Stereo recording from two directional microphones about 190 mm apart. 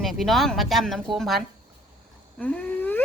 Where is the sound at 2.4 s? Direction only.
10° left (ahead or behind).